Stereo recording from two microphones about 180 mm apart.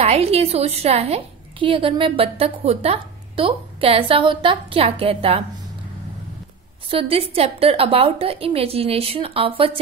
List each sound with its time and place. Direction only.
0.0 s a woman's voice: 35° right (ahead or behind)
6.9 s a woman's voice: 30° right (ahead or behind)